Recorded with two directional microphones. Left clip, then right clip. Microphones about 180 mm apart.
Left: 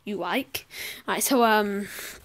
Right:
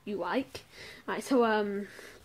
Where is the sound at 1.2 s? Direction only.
35° left (ahead or behind).